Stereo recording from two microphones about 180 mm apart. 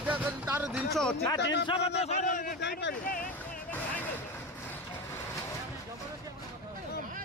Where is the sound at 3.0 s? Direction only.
50° left (ahead or behind).